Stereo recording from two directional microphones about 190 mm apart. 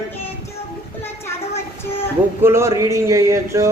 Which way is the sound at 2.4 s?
15° right (ahead or behind).